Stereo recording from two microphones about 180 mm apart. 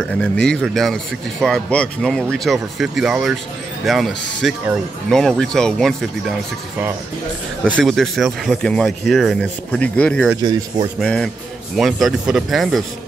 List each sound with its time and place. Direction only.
0.0 s speech: 5° left (ahead or behind)
7.6 s speech: 5° left (ahead or behind)
10.3 s speech: 20° right (ahead or behind)
11.0 s speech: 5° left (ahead or behind)